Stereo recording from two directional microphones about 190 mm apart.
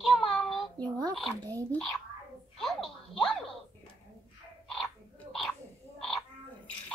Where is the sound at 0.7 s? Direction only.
20° right (ahead or behind).